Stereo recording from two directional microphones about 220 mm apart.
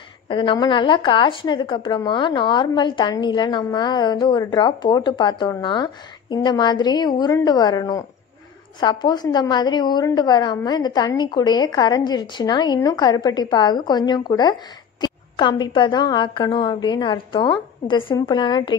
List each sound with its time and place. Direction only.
0.3 s a woman's voice: 20° left (ahead or behind)